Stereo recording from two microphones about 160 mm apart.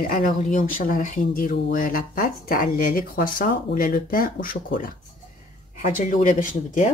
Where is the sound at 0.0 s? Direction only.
60° left (ahead or behind).